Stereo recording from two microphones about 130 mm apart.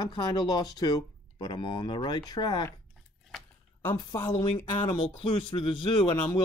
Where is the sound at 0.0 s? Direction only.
35° left (ahead or behind).